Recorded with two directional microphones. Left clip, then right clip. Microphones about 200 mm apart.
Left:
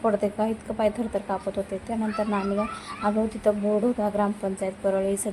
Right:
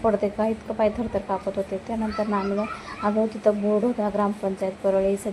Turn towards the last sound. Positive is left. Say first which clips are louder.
# right 3 dB
turn(degrees=0)  # may be behind; listen again after turning